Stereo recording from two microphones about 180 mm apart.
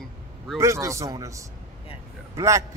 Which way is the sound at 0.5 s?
15° right (ahead or behind).